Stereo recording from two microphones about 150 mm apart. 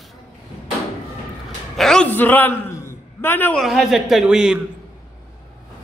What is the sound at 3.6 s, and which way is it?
Speech, centre (ahead or behind).